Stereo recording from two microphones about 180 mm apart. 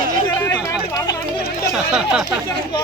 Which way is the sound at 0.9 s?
20° left (ahead or behind).